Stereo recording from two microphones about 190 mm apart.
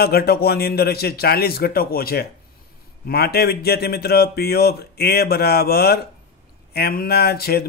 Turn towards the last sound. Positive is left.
turn(degrees=55)  # may be behind; listen again after turning